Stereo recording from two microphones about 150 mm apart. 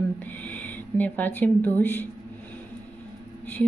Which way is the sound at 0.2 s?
10° left (ahead or behind).